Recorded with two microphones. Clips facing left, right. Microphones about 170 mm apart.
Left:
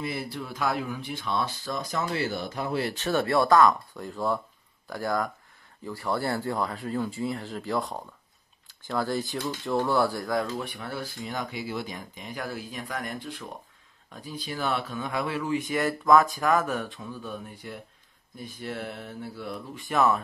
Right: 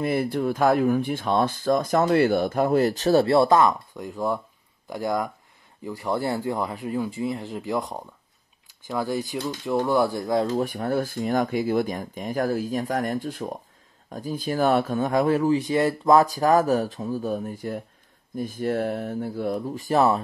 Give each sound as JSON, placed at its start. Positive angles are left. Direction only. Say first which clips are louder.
{"t": 0.0, "sound": "speech", "louder": "right 10 dB", "side_deg": -50}
{"t": 10.5, "sound": "speech", "louder": "right 10 dB", "side_deg": -45}